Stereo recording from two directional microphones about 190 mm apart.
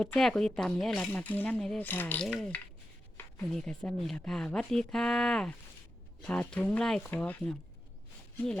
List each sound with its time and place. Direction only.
0.0 s speech: 5° left (ahead or behind)